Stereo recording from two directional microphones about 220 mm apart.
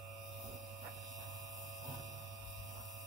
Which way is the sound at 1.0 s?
15° right (ahead or behind).